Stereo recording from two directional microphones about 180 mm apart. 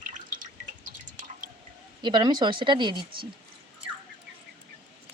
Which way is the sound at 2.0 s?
25° right (ahead or behind).